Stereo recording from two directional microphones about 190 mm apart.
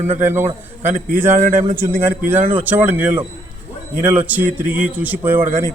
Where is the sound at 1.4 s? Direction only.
45° right (ahead or behind).